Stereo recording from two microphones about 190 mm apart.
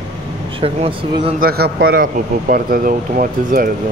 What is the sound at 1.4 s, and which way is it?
Speech, 55° right (ahead or behind).